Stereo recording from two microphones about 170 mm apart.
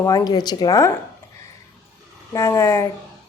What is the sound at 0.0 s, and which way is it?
Speech, 20° left (ahead or behind).